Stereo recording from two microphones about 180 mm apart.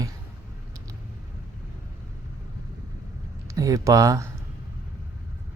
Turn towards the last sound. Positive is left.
turn(degrees=-20)  # may be behind; listen again after turning